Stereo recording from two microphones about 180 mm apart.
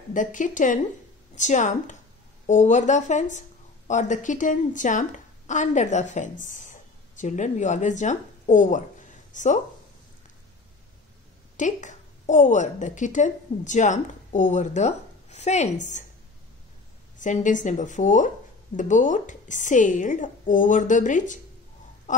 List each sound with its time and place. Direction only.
0.1 s a woman's voice: 45° left (ahead or behind)
11.5 s a woman's voice: 45° left (ahead or behind)
17.2 s a woman's voice: 45° left (ahead or behind)